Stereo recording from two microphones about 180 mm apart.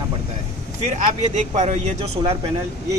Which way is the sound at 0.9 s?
40° right (ahead or behind).